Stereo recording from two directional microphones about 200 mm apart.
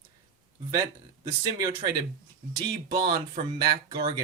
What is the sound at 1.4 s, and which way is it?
Speech, 20° right (ahead or behind).